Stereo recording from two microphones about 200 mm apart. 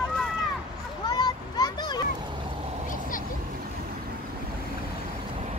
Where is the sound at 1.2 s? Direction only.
20° left (ahead or behind).